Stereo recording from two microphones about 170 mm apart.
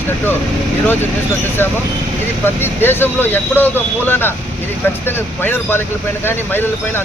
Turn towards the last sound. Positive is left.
turn(degrees=15)  # may be behind; listen again after turning